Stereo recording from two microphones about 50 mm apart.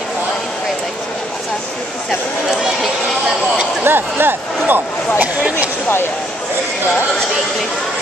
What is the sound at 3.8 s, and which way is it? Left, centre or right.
Speech, right.